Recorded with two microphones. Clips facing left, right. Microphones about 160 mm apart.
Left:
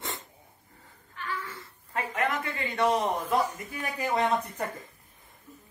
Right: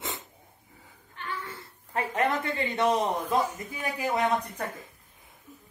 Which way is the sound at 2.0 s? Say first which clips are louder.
Right 3 dB; 35° right (ahead or behind).